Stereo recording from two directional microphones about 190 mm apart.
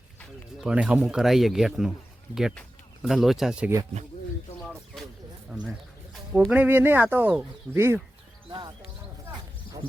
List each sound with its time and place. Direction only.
0.2 s speech: 5° right (ahead or behind)
4.6 s a sound: centre (ahead or behind)
6.5 s speech: 10° right (ahead or behind)
8.4 s speech: 25° right (ahead or behind)